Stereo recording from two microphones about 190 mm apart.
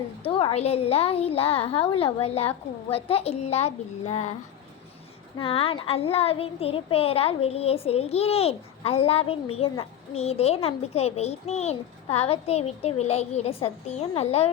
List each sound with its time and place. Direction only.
0.2 s a child's voice: 30° left (ahead or behind)
5.4 s a child's voice: 30° left (ahead or behind)